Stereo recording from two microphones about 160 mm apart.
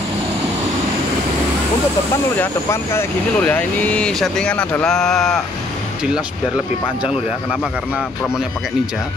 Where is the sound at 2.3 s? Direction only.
15° left (ahead or behind).